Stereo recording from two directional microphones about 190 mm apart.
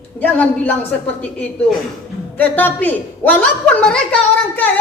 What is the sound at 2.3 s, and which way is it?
A woman's voice, 10° left (ahead or behind).